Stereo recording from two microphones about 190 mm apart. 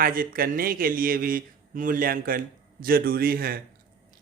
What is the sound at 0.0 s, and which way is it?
Speech, 50° right (ahead or behind).